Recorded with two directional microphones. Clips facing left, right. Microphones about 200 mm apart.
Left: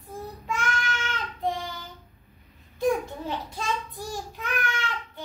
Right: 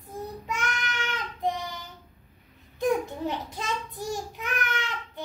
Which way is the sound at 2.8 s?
20° right (ahead or behind).